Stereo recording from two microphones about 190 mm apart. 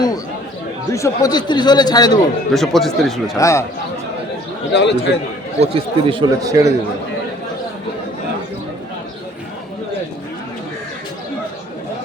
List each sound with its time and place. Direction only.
0.9 s a man's voice: 15° left (ahead or behind)
2.5 s speech: centre (ahead or behind)
3.3 s speech: 15° left (ahead or behind)
4.7 s a man's voice: 65° left (ahead or behind)
5.5 s speech: 30° right (ahead or behind)